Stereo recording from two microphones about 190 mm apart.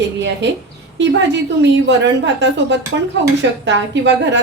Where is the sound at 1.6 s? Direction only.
70° right (ahead or behind).